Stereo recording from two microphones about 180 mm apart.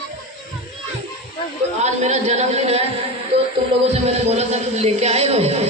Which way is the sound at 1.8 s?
40° right (ahead or behind).